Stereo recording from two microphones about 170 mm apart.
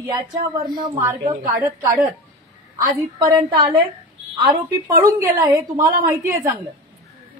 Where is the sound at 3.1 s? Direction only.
25° right (ahead or behind).